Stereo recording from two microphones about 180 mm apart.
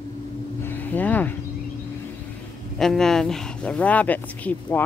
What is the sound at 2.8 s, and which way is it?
A woman's voice, centre (ahead or behind).